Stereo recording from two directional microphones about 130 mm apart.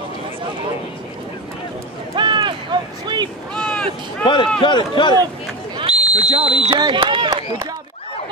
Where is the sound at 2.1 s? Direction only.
35° right (ahead or behind).